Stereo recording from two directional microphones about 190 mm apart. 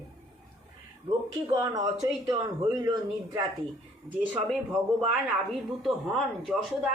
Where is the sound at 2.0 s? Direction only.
20° right (ahead or behind).